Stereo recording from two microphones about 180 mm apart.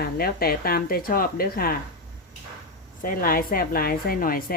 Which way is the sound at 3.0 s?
55° left (ahead or behind).